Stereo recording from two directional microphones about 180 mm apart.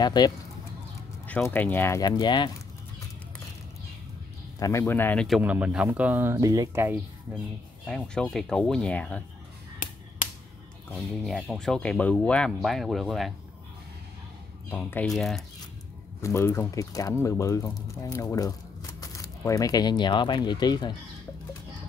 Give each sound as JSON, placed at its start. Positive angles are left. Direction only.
{"t": 0.0, "sound": "speech", "side_deg": 25}
{"t": 1.2, "sound": "speech", "side_deg": 10}
{"t": 4.6, "sound": "speech", "side_deg": 15}
{"t": 5.4, "sound": "speech", "side_deg": -5}
{"t": 7.8, "sound": "speech", "side_deg": 5}
{"t": 10.9, "sound": "speech", "side_deg": 0}
{"t": 14.7, "sound": "speech", "side_deg": 10}
{"t": 16.2, "sound": "speech", "side_deg": 15}